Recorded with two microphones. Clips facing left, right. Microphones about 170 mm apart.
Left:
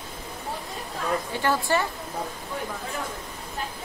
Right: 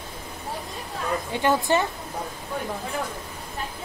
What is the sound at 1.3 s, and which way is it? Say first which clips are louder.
Speech: right 5 dB; 20° right (ahead or behind).